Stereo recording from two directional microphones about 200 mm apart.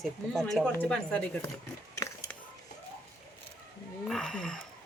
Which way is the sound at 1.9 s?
15° left (ahead or behind).